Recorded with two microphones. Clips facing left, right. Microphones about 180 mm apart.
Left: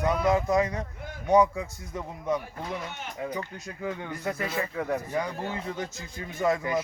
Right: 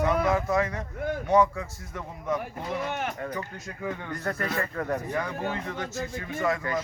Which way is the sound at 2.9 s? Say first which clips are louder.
Right 8 dB; 65° right (ahead or behind).